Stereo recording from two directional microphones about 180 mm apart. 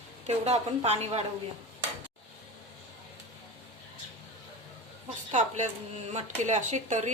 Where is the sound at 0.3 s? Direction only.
35° right (ahead or behind).